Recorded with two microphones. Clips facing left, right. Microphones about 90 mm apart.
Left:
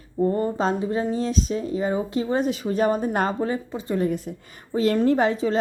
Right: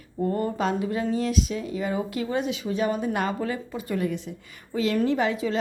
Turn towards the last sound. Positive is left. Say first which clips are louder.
# left 4 dB
turn(degrees=35)  # may be behind; listen again after turning